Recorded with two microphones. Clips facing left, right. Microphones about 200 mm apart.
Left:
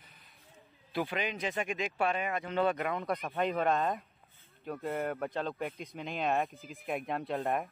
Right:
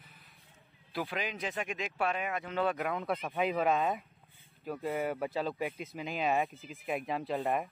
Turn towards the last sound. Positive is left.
turn(degrees=0)  # may be behind; listen again after turning